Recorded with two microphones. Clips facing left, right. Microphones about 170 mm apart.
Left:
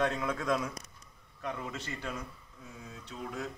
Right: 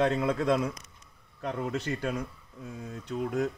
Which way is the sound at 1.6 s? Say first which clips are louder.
Right 9 dB; 65° right (ahead or behind).